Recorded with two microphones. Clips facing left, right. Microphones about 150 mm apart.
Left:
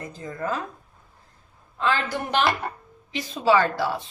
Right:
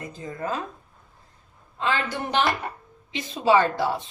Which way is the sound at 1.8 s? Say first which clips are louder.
Left 1 dB; 20° right (ahead or behind).